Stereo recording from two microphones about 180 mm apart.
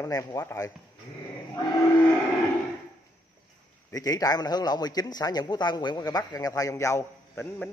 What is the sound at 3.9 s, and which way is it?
A man's voice, 20° left (ahead or behind).